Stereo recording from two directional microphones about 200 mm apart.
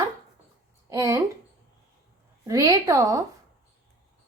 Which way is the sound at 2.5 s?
20° right (ahead or behind).